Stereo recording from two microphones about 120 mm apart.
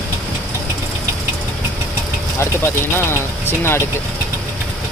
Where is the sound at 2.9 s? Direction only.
20° left (ahead or behind).